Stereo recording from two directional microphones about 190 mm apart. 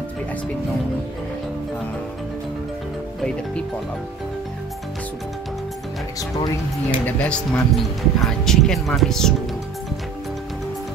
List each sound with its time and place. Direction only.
6.3 s speech: 20° left (ahead or behind)
7.1 s speech: 5° left (ahead or behind)